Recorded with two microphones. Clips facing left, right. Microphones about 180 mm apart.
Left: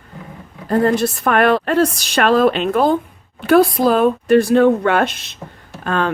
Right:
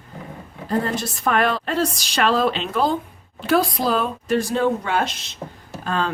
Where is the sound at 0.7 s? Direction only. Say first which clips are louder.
Left 8 dB; 60° left (ahead or behind).